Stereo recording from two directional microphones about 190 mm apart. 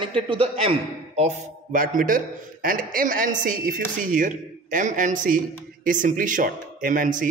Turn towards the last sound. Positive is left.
turn(degrees=-45)  # may be behind; listen again after turning